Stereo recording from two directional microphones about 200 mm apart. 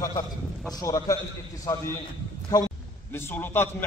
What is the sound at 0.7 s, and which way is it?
A man's voice, 15° left (ahead or behind).